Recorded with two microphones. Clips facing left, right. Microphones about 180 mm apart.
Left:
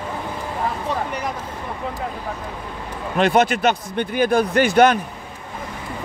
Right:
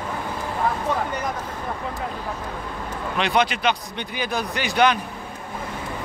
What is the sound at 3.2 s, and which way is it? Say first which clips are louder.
Speech: left 5 dB; 45° left (ahead or behind).